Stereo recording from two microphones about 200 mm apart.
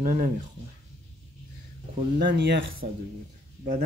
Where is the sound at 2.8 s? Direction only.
50° right (ahead or behind).